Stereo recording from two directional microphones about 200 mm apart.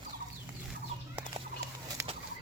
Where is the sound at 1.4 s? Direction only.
30° right (ahead or behind).